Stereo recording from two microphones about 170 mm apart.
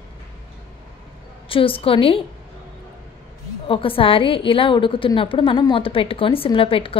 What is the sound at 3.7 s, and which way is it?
A woman's voice, 30° left (ahead or behind).